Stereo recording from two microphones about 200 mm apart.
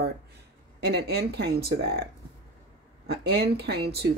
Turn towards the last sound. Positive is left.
turn(degrees=-55)  # may be behind; listen again after turning